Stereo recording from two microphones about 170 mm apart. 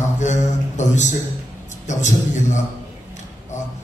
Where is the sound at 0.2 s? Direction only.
45° left (ahead or behind).